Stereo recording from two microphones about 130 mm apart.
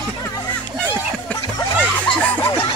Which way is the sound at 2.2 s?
15° left (ahead or behind).